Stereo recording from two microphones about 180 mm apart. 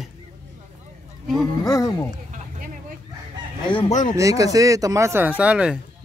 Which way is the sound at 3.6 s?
30° left (ahead or behind).